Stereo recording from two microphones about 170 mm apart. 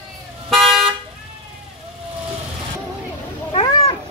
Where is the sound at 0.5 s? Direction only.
Centre (ahead or behind).